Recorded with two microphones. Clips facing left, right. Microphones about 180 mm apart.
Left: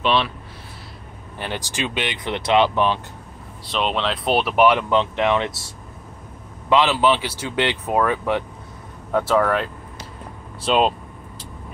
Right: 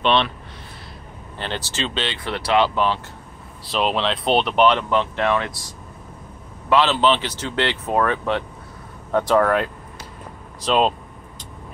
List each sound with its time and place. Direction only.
0.0 s speech: 5° left (ahead or behind)
1.4 s speech: 15° left (ahead or behind)
3.6 s speech: centre (ahead or behind); by 5.6 s 20° left (ahead or behind)
6.7 s speech: 10° left (ahead or behind)